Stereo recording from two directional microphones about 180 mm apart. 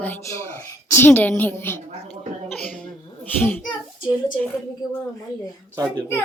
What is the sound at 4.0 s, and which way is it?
Speech, 25° left (ahead or behind).